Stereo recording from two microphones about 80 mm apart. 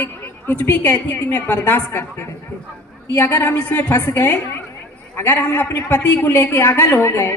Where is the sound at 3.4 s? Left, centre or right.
Centre.